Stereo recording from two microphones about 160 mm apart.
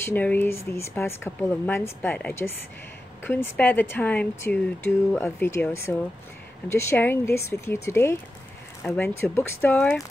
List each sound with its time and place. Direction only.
0.0 s speech: 10° left (ahead or behind)